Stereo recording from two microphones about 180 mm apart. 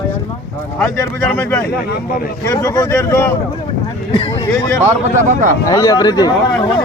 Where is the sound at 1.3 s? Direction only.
10° left (ahead or behind).